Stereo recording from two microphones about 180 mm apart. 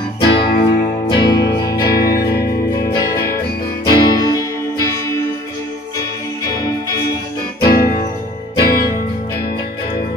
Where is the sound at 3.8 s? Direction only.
20° left (ahead or behind).